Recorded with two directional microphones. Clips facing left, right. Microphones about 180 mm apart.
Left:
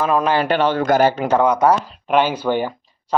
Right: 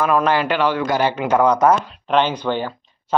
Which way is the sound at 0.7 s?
45° left (ahead or behind).